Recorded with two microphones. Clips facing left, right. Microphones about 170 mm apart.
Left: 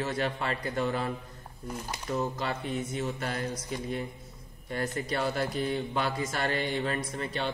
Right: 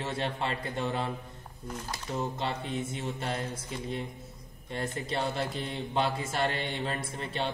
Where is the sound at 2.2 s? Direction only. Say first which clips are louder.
Left 1 dB; 25° right (ahead or behind).